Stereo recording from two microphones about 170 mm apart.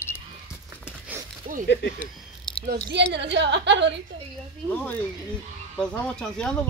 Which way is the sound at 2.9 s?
90° right.